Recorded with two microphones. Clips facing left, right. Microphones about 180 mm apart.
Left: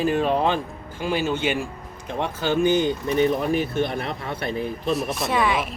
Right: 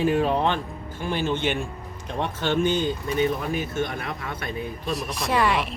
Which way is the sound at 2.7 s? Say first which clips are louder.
Left 4 dB; 20° left (ahead or behind).